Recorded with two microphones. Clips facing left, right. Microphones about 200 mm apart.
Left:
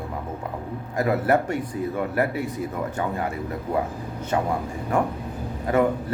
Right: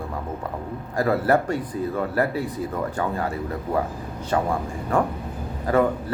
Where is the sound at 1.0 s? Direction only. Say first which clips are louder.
Right 1 dB; 20° left (ahead or behind).